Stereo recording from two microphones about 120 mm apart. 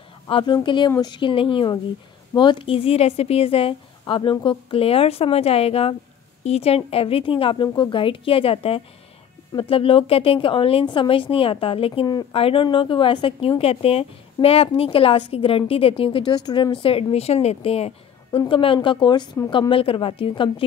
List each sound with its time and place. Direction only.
0.3 s a woman's voice: 40° left (ahead or behind)
12.1 s a woman's voice: 35° left (ahead or behind)
12.4 s a woman's voice: 50° left (ahead or behind); by 16.7 s 35° left (ahead or behind)
16.7 s a woman's voice: 50° left (ahead or behind)